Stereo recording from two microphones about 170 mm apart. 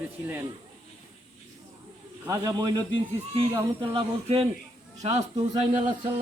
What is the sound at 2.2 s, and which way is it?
A man's voice, 20° right (ahead or behind).